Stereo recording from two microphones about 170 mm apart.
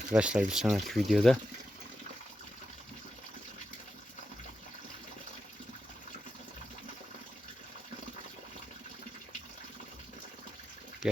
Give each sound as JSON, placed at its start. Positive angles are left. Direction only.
{"t": 0.1, "sound": "speech", "side_deg": -5}
{"t": 11.0, "sound": "water", "side_deg": -5}